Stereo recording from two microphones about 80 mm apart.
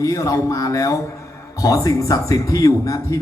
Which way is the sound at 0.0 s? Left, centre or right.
Left.